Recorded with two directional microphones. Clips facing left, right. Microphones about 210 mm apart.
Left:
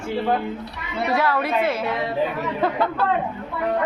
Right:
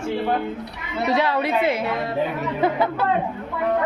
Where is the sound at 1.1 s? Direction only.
20° right (ahead or behind).